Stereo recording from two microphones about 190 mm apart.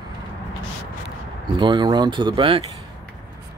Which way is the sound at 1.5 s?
25° right (ahead or behind).